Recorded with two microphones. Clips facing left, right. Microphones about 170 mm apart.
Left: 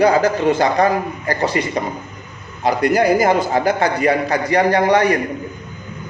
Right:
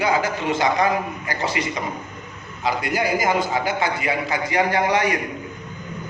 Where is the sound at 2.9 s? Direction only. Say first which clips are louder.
Left 8 dB; 40° left (ahead or behind).